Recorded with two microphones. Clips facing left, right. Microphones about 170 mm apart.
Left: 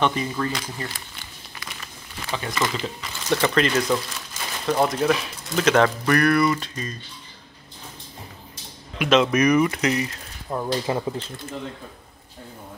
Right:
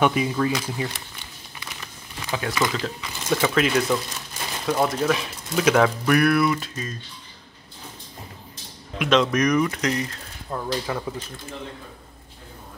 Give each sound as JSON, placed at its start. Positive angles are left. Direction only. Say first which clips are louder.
{"t": 0.0, "sound": "speech", "louder": "right 3 dB", "side_deg": -5}
{"t": 2.2, "sound": "speech", "louder": "right 2 dB", "side_deg": -5}
{"t": 8.9, "sound": "speech", "louder": "left 1 dB", "side_deg": 0}
{"t": 10.5, "sound": "speech", "louder": "left 3 dB", "side_deg": 25}